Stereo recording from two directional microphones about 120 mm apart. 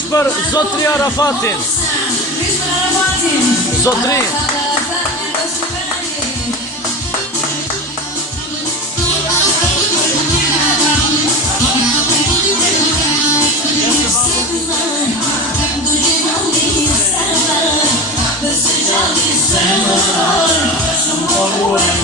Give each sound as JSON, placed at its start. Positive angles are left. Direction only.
{"t": 0.1, "sound": "a man's voice", "side_deg": 25}
{"t": 3.8, "sound": "a man's voice", "side_deg": 30}